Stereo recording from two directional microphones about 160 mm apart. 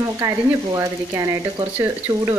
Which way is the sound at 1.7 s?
10° right (ahead or behind).